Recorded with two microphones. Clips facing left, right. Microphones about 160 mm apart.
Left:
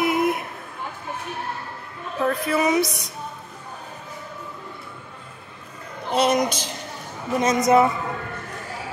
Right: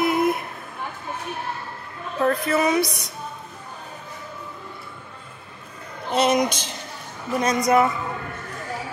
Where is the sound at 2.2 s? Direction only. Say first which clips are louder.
Right 1 dB; 5° left (ahead or behind).